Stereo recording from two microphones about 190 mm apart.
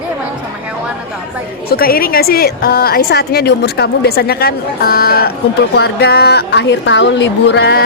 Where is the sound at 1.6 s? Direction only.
50° left (ahead or behind).